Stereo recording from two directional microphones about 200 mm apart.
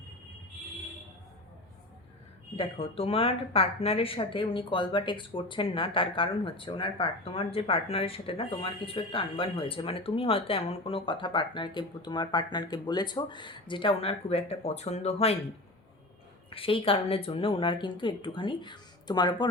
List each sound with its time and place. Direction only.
2.6 s speech: 30° left (ahead or behind)
16.5 s speech: 25° left (ahead or behind)